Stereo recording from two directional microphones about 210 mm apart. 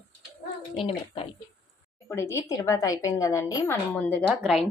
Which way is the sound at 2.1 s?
15° left (ahead or behind).